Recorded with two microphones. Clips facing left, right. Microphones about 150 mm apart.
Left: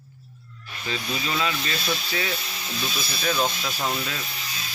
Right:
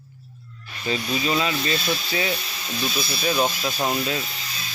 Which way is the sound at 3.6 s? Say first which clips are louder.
Right 4 dB; 25° right (ahead or behind).